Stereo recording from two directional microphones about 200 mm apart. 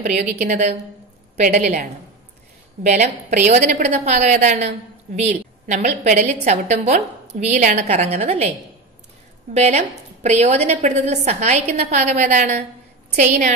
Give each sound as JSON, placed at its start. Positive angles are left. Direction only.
{"t": 0.0, "sound": "a woman's voice", "side_deg": -40}
{"t": 2.9, "sound": "a woman's voice", "side_deg": -35}
{"t": 9.5, "sound": "a woman's voice", "side_deg": -35}